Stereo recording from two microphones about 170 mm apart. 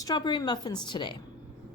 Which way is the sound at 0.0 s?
25° left (ahead or behind).